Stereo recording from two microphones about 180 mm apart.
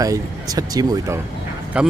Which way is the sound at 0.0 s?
20° right (ahead or behind).